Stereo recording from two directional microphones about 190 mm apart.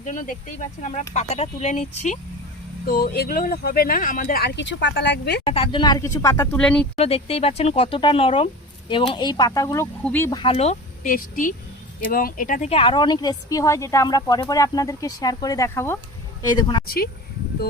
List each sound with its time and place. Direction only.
0.0 s speech: 40° left (ahead or behind)
2.8 s speech: 50° left (ahead or behind)
5.5 s a woman's voice: 30° left (ahead or behind)
6.6 s speech: 5° left (ahead or behind)
6.9 s a woman's voice: 30° left (ahead or behind); by 10.3 s 10° left (ahead or behind)
10.3 s speech: 30° left (ahead or behind); by 12.7 s 45° left (ahead or behind)
12.7 s a woman's voice: 25° left (ahead or behind)
16.8 s speech: 50° left (ahead or behind)